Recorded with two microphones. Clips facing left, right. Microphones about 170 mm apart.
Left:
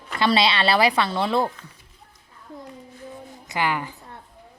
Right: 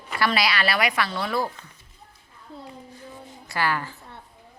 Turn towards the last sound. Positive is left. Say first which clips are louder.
# left 1 dB
turn(degrees=15)  # may be behind; listen again after turning